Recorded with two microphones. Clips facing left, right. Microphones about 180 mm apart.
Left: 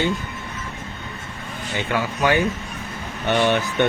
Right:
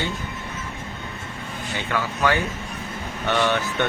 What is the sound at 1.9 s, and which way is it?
Speech, 15° left (ahead or behind).